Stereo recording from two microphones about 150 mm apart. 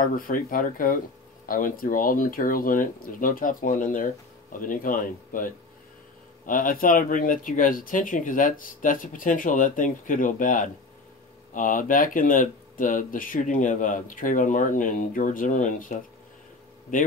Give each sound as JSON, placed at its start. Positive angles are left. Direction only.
{"t": 0.0, "sound": "speech", "side_deg": 65}